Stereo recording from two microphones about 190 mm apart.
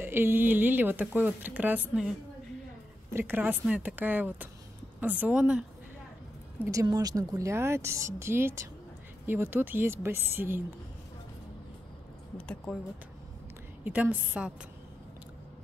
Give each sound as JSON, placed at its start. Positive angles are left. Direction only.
{"t": 0.0, "sound": "speech", "side_deg": -10}
{"t": 3.1, "sound": "a woman's voice", "side_deg": -10}
{"t": 6.6, "sound": "speech", "side_deg": -15}
{"t": 13.8, "sound": "speech", "side_deg": -10}